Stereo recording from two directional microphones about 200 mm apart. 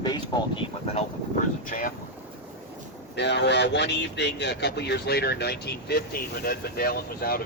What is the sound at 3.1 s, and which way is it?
A man's voice, 60° left (ahead or behind).